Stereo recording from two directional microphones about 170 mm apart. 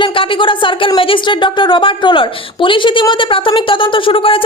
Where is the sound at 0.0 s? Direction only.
30° left (ahead or behind).